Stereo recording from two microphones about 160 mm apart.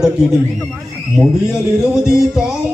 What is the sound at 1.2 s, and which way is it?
A man's voice, 5° right (ahead or behind).